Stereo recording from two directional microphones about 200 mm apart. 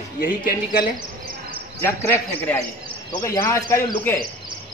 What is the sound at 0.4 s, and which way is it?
Speech, 45° left (ahead or behind).